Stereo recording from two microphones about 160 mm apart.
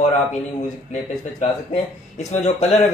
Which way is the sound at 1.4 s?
45° left (ahead or behind).